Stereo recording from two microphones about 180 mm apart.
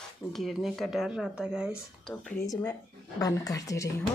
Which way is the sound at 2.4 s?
20° left (ahead or behind).